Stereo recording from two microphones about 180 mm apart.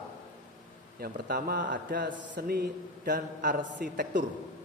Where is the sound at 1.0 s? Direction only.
55° right (ahead or behind).